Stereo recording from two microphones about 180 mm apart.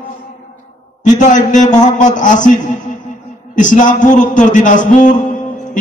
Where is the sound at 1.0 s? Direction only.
45° left (ahead or behind).